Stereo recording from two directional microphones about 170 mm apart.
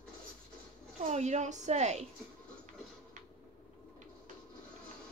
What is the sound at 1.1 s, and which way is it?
A woman's voice, 40° right (ahead or behind).